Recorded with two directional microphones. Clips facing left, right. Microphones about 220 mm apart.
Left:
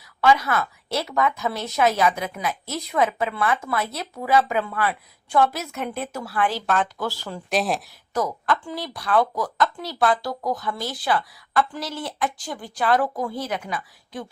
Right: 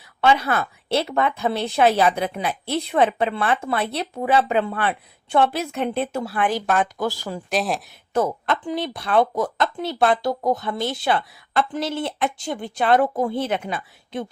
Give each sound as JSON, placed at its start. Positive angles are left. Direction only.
{"t": 0.2, "sound": "speech", "side_deg": -30}
{"t": 7.5, "sound": "speech", "side_deg": 0}
{"t": 7.9, "sound": "speech", "side_deg": -25}